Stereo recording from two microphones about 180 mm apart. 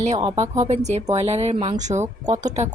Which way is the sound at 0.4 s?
15° right (ahead or behind).